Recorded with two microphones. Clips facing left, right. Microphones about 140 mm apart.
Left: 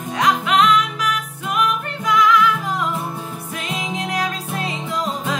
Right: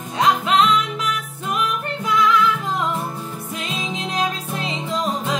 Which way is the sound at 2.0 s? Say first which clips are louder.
Left 2 dB; 30° right (ahead or behind).